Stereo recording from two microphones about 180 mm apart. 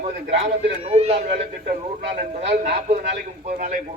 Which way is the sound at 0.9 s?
35° right (ahead or behind).